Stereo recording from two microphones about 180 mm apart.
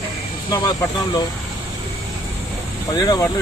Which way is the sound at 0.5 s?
20° left (ahead or behind).